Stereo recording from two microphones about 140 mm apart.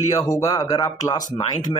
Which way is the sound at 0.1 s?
25° left (ahead or behind).